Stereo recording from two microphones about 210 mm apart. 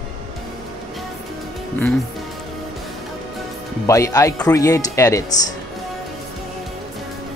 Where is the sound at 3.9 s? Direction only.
15° left (ahead or behind).